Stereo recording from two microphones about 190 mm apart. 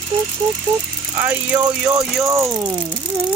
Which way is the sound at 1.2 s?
10° right (ahead or behind).